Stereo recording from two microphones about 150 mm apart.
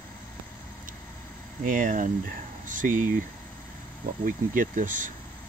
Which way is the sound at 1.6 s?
60° right (ahead or behind).